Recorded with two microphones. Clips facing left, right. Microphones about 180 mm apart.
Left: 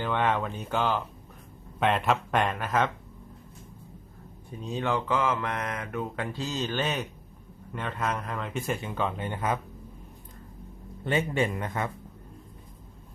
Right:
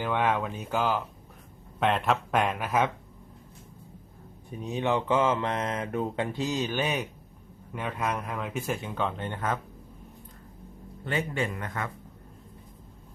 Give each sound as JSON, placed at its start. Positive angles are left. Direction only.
{"t": 0.0, "sound": "speech", "side_deg": -10}
{"t": 4.4, "sound": "mantra", "side_deg": -20}
{"t": 6.3, "sound": "speech", "side_deg": -15}
{"t": 11.0, "sound": "speech", "side_deg": 20}